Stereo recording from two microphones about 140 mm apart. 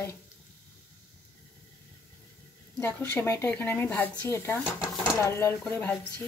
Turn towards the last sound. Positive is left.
turn(degrees=10)  # may be behind; listen again after turning